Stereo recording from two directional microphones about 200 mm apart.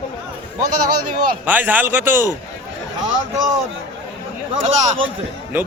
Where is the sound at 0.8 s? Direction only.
40° right (ahead or behind).